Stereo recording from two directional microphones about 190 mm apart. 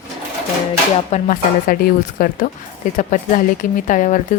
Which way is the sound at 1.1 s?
45° left (ahead or behind).